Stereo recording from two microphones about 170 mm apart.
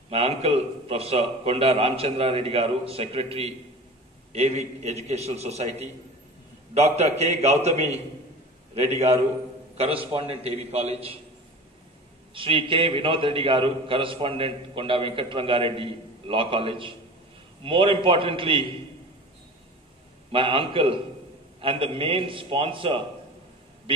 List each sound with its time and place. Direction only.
0.1 s a man's voice: 35° right (ahead or behind)
12.4 s a man's voice: 30° right (ahead or behind)
20.2 s a man's voice: 30° right (ahead or behind)